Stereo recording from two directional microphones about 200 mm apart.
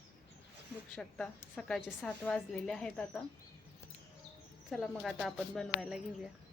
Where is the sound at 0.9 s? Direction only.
5° left (ahead or behind).